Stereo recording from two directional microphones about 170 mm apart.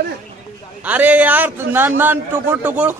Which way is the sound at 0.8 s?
10° right (ahead or behind).